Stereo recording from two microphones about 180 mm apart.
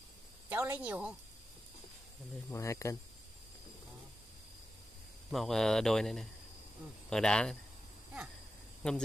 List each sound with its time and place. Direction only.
0.5 s a woman's voice: 15° right (ahead or behind)
2.5 s speech: 15° left (ahead or behind)
5.3 s speech: centre (ahead or behind)
8.8 s speech: 5° left (ahead or behind)